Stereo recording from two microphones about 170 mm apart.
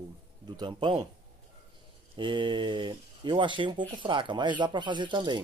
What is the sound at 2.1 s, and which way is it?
Speech, 30° right (ahead or behind).